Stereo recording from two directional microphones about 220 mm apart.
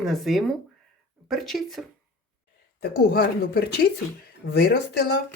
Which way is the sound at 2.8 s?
45° left (ahead or behind).